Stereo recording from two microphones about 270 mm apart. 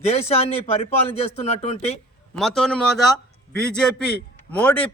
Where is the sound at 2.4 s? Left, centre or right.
Centre.